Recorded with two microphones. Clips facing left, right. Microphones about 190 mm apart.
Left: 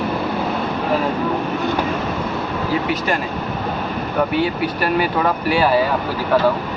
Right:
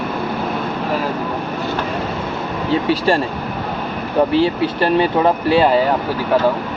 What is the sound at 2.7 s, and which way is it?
Speech, 30° right (ahead or behind).